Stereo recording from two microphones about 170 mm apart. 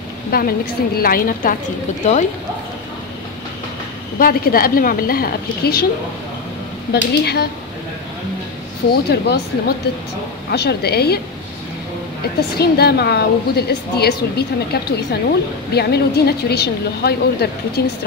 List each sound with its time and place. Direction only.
0.3 s a woman's voice: 60° left (ahead or behind)
4.2 s a woman's voice: 60° left (ahead or behind)
6.9 s a woman's voice: 70° left (ahead or behind)
8.9 s a woman's voice: 75° left (ahead or behind)
12.5 s a woman's voice: 70° left (ahead or behind)